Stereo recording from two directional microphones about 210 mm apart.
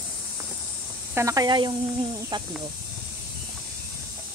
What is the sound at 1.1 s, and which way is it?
Speech, 15° right (ahead or behind).